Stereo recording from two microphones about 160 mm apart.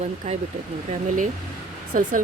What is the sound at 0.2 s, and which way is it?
Speech, 45° right (ahead or behind).